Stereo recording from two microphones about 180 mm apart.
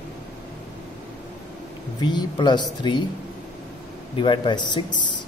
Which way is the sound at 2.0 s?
25° left (ahead or behind).